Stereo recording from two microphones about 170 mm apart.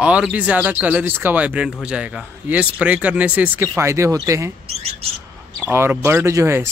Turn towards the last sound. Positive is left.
turn(degrees=-15)  # may be behind; listen again after turning